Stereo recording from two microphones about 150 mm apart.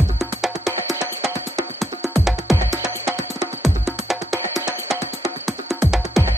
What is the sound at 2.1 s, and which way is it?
Music, centre (ahead or behind).